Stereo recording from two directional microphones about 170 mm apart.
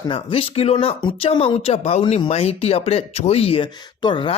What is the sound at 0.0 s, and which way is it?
Speech, 30° left (ahead or behind).